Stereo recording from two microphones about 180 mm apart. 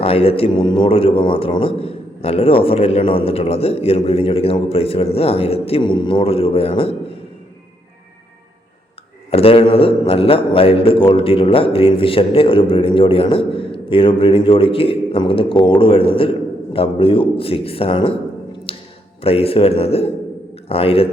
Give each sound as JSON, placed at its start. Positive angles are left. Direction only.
{"t": 0.0, "sound": "a man's voice", "side_deg": 30}
{"t": 9.3, "sound": "a man's voice", "side_deg": 30}
{"t": 18.7, "sound": "a sound", "side_deg": 30}
{"t": 19.2, "sound": "a man's voice", "side_deg": 35}